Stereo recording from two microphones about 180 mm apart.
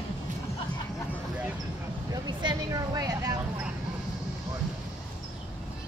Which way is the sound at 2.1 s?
25° right (ahead or behind).